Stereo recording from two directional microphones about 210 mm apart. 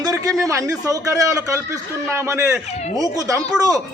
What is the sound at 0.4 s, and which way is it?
A man's voice, 15° right (ahead or behind).